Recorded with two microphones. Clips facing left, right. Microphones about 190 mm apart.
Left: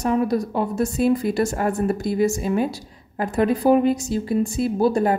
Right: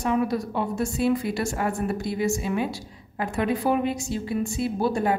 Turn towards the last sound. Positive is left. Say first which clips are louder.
# left 5 dB
turn(degrees=40)  # may be behind; listen again after turning